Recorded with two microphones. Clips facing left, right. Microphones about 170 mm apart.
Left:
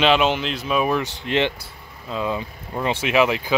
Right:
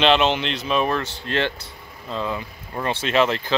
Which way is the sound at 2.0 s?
5° left (ahead or behind).